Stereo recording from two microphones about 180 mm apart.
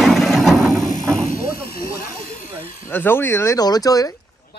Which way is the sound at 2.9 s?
10° left (ahead or behind).